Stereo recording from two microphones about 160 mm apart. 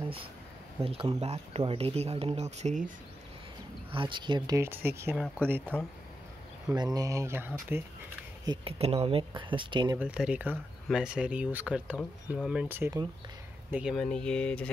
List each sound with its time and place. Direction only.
0.8 s speech: 35° right (ahead or behind)
3.9 s speech: 30° right (ahead or behind); by 5.1 s 15° right (ahead or behind)
5.7 s speech: 10° left (ahead or behind)
6.7 s speech: 25° right (ahead or behind)
8.6 s speech: 40° right (ahead or behind)
9.9 s speech: 5° right (ahead or behind)
13.9 s speech: 5° left (ahead or behind)